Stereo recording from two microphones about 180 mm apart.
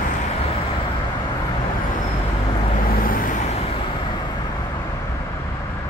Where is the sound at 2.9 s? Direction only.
55° left (ahead or behind).